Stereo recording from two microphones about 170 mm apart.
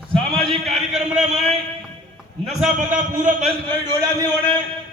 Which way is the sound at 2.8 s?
50° right (ahead or behind).